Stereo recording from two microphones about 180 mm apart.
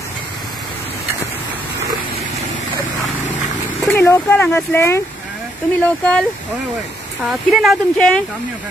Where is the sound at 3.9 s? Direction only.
10° left (ahead or behind).